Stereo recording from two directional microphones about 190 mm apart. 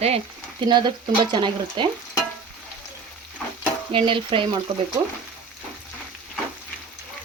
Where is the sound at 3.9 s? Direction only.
25° right (ahead or behind).